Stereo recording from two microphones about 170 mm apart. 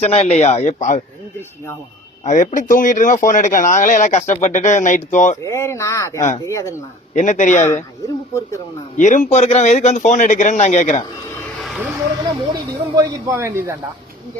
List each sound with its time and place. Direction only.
0.0 s a man's voice: 40° left (ahead or behind)
2.2 s a man's voice: 50° left (ahead or behind)
5.4 s speech: 15° left (ahead or behind)
7.1 s a man's voice: 45° left (ahead or behind)
9.0 s a man's voice: 50° left (ahead or behind)
11.6 s vehicle: centre (ahead or behind)
12.5 s a man's voice: 20° right (ahead or behind)